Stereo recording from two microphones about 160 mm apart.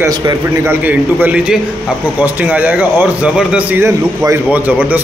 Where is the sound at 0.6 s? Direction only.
10° right (ahead or behind).